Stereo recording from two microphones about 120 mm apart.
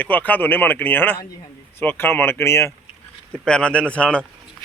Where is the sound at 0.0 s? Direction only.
15° left (ahead or behind).